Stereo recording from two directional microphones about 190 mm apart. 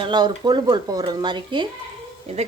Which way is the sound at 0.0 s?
25° right (ahead or behind).